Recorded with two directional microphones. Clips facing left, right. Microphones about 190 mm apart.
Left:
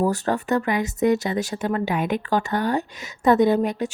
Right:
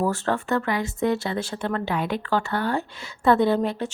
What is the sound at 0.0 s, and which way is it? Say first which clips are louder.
Speech: left 2 dB; 15° left (ahead or behind).